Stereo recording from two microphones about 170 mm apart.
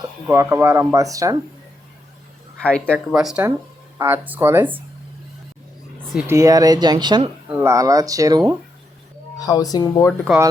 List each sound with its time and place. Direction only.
0.3 s speech: 15° right (ahead or behind)
2.6 s speech: 5° left (ahead or behind)
3.1 s speech: 5° right (ahead or behind)
6.1 s speech: 15° right (ahead or behind)
7.4 s speech: 10° right (ahead or behind)
9.4 s speech: 20° left (ahead or behind)